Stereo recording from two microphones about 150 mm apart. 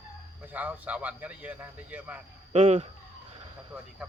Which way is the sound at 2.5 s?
45° right (ahead or behind).